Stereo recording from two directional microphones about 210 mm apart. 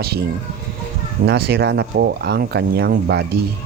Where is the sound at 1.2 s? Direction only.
50° right (ahead or behind).